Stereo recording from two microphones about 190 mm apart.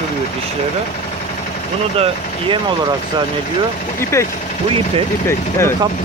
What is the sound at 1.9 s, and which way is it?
Speech, 30° right (ahead or behind).